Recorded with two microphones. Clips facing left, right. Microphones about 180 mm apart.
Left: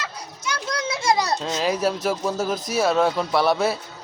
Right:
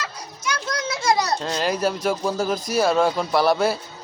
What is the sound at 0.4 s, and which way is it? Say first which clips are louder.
Children playing: even; 25° left (ahead or behind).